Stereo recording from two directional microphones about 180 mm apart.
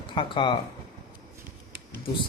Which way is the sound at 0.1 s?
30° left (ahead or behind).